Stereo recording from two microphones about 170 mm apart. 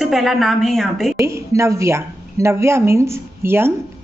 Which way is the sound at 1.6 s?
15° right (ahead or behind).